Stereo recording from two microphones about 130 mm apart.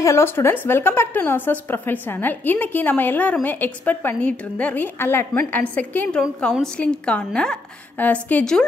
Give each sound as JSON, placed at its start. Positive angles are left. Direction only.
{"t": 0.0, "sound": "a woman's voice", "side_deg": 20}